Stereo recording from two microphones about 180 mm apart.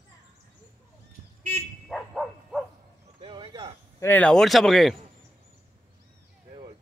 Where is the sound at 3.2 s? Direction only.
25° right (ahead or behind).